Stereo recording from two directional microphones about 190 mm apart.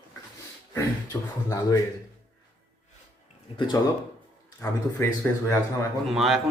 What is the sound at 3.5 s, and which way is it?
Speech, 25° left (ahead or behind).